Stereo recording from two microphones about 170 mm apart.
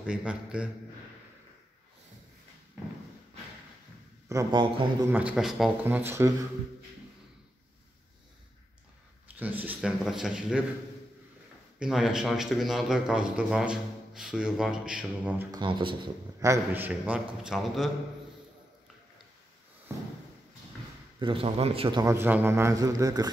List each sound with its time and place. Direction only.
0.0 s speech: 5° right (ahead or behind)
4.3 s speech: 25° right (ahead or behind)
5.1 s a man's voice: 5° right (ahead or behind)
9.4 s speech: 10° right (ahead or behind)
11.8 s speech: 5° right (ahead or behind)
15.5 s speech: 30° right (ahead or behind)
16.3 s a man's voice: 15° right (ahead or behind); by 17.9 s centre (ahead or behind)
19.9 s a sound: 15° right (ahead or behind)
21.2 s a man's voice: 30° right (ahead or behind)
22.0 s speech: 15° right (ahead or behind)